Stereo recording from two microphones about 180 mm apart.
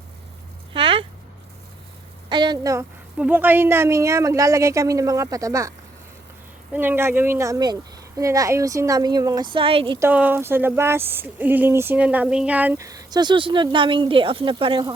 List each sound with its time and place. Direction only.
0.7 s a sound: 30° right (ahead or behind)
2.3 s speech: 25° right (ahead or behind)
3.2 s speech: 10° right (ahead or behind)
6.7 s speech: 10° right (ahead or behind); by 10.0 s 30° right (ahead or behind)
10.0 s speech: 10° right (ahead or behind); by 14.9 s 25° right (ahead or behind)